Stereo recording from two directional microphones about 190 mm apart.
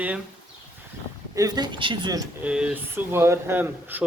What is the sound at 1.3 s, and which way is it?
Speech, 20° right (ahead or behind).